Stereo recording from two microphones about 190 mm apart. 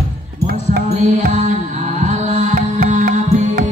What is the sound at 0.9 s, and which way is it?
Music, 35° right (ahead or behind).